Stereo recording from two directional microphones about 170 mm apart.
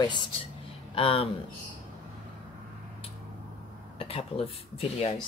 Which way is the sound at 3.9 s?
35° left (ahead or behind).